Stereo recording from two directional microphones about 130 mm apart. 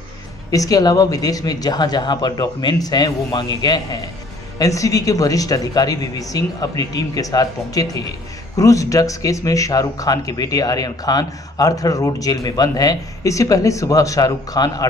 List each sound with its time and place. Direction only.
0.5 s speech: 30° left (ahead or behind)